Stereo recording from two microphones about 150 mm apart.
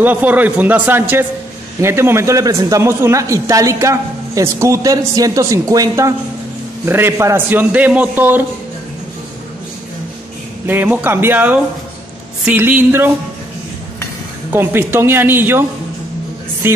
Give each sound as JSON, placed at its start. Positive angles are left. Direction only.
{"t": 0.0, "sound": "a man's voice", "side_deg": -10}
{"t": 10.7, "sound": "a man's voice", "side_deg": -10}
{"t": 14.5, "sound": "a man's voice", "side_deg": -15}
{"t": 16.6, "sound": "speech", "side_deg": -15}